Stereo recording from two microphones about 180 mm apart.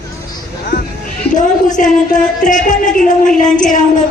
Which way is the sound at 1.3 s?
45° left (ahead or behind).